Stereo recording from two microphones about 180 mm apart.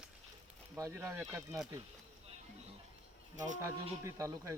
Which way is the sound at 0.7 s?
15° right (ahead or behind).